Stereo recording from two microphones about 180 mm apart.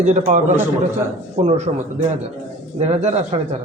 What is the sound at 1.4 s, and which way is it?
A man's voice, 40° right (ahead or behind).